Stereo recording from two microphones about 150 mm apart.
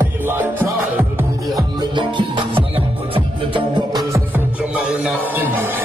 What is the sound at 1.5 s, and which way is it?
Music, 25° right (ahead or behind).